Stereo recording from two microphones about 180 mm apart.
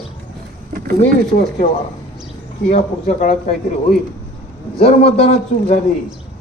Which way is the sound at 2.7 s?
40° left (ahead or behind).